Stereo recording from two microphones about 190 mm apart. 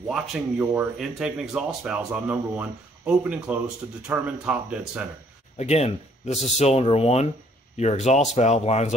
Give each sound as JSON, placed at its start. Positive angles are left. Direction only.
{"t": 0.1, "sound": "speech", "side_deg": -5}
{"t": 5.6, "sound": "speech", "side_deg": 35}